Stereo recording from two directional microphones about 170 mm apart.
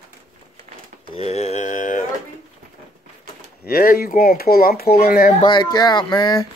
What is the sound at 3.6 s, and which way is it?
Speech, 60° left (ahead or behind).